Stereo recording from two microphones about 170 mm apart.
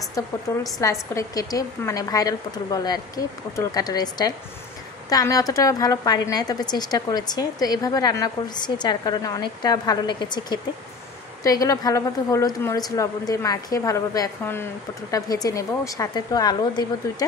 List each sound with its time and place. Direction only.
0.7 s a woman's voice: 20° left (ahead or behind)